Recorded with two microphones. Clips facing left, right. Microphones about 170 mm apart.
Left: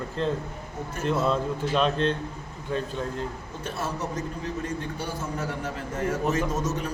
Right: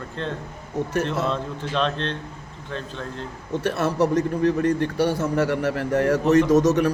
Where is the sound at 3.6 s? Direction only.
70° right (ahead or behind).